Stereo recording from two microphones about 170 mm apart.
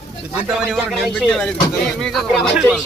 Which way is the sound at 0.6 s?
Centre (ahead or behind).